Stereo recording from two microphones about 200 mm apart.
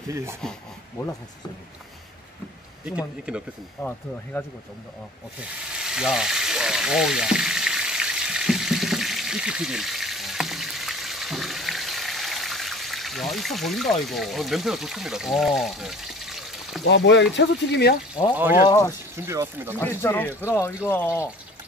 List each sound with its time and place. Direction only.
0.1 s speech: 15° right (ahead or behind)
0.4 s a sound: 5° left (ahead or behind)
2.8 s speech: 5° right (ahead or behind)
3.8 s speech: 10° left (ahead or behind)
5.4 s frying: 5° right (ahead or behind)
14.0 s speech: centre (ahead or behind)
16.9 s speech: 65° left (ahead or behind)
18.3 s speech: 10° right (ahead or behind)
18.7 s speech: 20° left (ahead or behind)
19.1 s speech: 15° right (ahead or behind)
19.8 s speech: 10° left (ahead or behind)